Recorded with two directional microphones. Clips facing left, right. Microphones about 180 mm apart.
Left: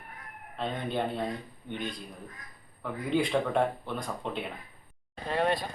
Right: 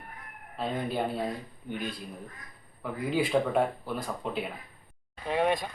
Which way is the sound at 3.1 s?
5° right (ahead or behind).